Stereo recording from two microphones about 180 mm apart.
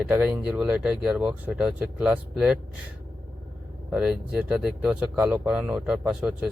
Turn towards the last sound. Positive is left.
turn(degrees=-5)  # may be behind; listen again after turning